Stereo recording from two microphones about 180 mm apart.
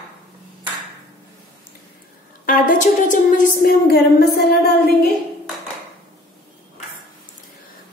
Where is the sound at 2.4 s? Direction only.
50° left (ahead or behind).